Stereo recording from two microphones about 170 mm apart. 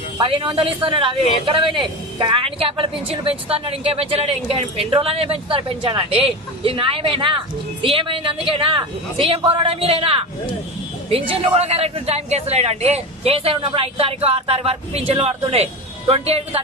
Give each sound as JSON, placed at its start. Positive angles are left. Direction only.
{"t": 0.2, "sound": "a man's voice", "side_deg": -30}